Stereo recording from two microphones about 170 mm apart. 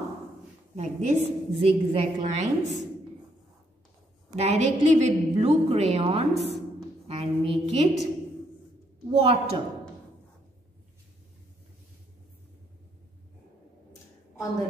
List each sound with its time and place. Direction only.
0.7 s a woman's voice: 40° right (ahead or behind)
4.3 s a woman's voice: 40° right (ahead or behind)
9.1 s a woman's voice: 35° right (ahead or behind)